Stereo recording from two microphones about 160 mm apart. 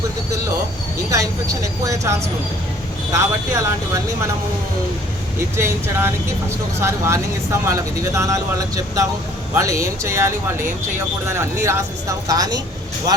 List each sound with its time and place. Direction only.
1.1 s speech: 20° right (ahead or behind)
5.5 s speech: 15° right (ahead or behind)